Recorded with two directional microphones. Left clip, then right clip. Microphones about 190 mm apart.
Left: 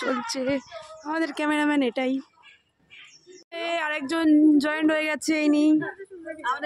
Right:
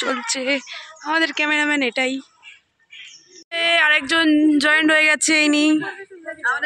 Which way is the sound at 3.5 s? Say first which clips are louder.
Right 11 dB; 5° left (ahead or behind).